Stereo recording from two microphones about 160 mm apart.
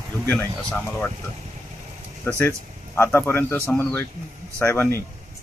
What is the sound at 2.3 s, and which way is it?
Speech, 15° left (ahead or behind).